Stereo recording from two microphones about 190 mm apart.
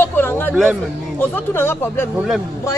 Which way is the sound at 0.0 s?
10° left (ahead or behind).